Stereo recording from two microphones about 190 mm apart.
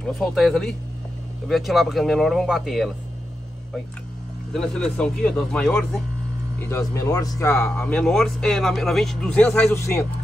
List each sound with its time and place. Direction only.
0.0 s speech: centre (ahead or behind)
4.5 s speech: 5° left (ahead or behind)